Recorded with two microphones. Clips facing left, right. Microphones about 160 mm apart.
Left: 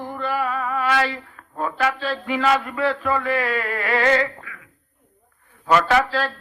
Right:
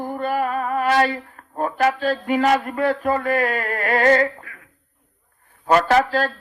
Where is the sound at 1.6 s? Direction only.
45° right (ahead or behind).